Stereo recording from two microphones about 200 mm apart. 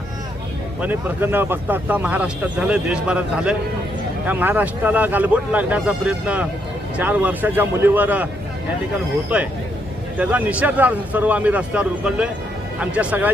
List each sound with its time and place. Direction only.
0.8 s speech: 10° right (ahead or behind)
9.3 s speech: 5° right (ahead or behind)